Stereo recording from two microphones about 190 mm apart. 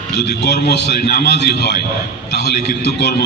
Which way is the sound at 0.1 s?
60° left (ahead or behind).